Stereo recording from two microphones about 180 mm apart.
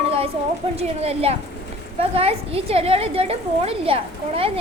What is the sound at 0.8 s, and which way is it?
Speech, 35° right (ahead or behind).